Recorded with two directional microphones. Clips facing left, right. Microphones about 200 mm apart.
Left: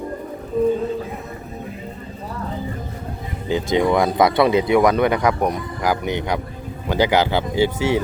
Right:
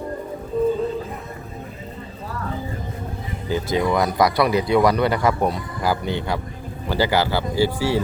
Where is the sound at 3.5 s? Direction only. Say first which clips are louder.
Left 3 dB; 25° left (ahead or behind).